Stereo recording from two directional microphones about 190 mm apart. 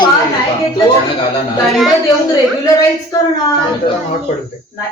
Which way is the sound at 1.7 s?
Centre (ahead or behind).